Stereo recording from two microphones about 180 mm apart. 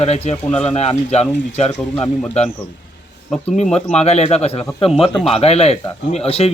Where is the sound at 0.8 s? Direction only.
35° left (ahead or behind).